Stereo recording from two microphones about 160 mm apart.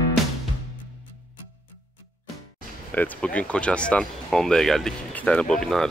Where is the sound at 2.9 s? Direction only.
10° left (ahead or behind).